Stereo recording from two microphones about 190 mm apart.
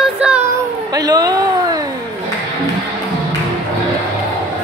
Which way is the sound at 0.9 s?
20° right (ahead or behind).